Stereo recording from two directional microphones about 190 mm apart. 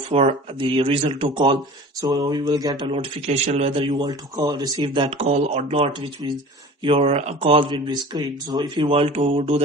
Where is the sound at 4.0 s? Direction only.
20° right (ahead or behind).